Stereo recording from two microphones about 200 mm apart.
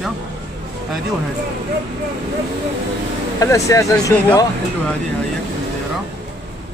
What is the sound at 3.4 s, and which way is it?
Speech, 15° left (ahead or behind).